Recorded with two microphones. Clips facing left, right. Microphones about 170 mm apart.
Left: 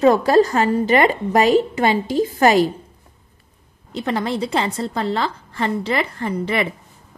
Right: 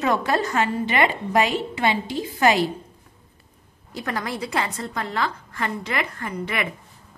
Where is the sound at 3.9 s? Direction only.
25° left (ahead or behind).